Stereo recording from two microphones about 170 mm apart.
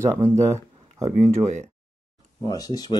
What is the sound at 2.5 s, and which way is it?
Speech, 20° left (ahead or behind).